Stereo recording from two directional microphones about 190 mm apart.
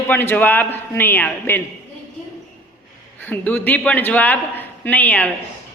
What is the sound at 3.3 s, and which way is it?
A man's voice, 10° left (ahead or behind).